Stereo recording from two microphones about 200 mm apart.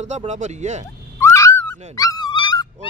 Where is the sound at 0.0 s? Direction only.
35° right (ahead or behind).